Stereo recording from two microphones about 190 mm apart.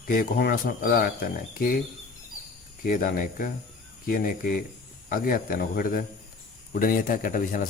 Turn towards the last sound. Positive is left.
turn(degrees=45)  # may be behind; listen again after turning